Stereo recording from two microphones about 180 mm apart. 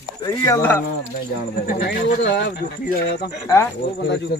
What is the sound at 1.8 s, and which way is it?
Speech, 70° left (ahead or behind).